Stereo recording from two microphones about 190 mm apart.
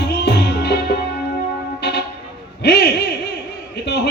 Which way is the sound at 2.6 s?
60° left (ahead or behind).